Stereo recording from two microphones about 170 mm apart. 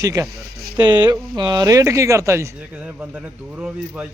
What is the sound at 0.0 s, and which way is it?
Speech, 20° right (ahead or behind).